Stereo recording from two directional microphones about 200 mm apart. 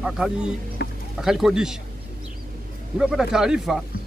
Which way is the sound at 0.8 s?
50° left (ahead or behind).